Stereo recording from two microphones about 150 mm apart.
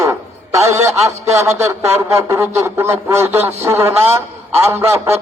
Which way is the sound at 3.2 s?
45° right (ahead or behind).